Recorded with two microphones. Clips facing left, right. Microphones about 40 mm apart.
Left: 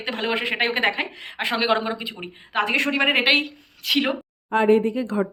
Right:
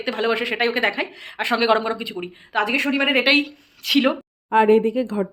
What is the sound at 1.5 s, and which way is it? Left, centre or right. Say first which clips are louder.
Speech: right 4 dB; centre.